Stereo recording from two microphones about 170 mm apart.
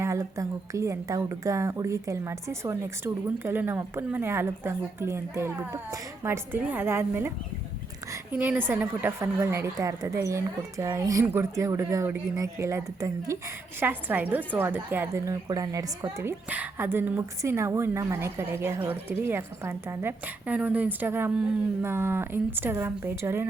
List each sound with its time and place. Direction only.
0.0 s speech: 15° right (ahead or behind)